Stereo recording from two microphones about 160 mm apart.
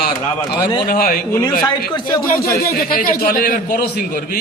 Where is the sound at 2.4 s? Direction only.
65° left (ahead or behind).